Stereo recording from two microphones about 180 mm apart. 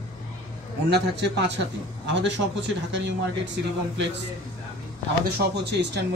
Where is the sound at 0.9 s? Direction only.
70° right (ahead or behind).